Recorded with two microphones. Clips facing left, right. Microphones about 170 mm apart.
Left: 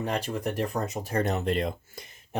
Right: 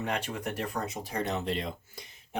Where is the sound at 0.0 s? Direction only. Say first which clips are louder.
Left 4 dB; 35° left (ahead or behind); by 2.0 s 50° left (ahead or behind).